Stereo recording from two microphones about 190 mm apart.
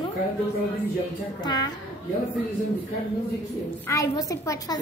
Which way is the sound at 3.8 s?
15° left (ahead or behind).